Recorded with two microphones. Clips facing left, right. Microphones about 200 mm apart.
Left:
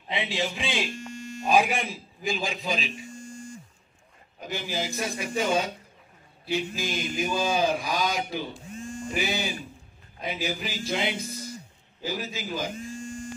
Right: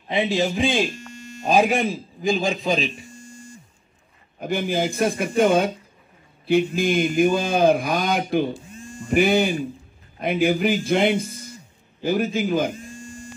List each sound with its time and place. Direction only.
0.1 s a man's voice: 45° right (ahead or behind)
4.4 s speech: 55° right (ahead or behind)